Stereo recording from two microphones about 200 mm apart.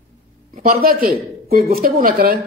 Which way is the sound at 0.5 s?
50° right (ahead or behind).